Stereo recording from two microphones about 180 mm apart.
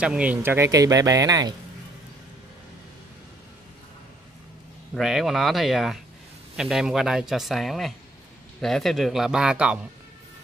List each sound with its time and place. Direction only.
0.0 s speech: 5° right (ahead or behind)
4.9 s speech: centre (ahead or behind)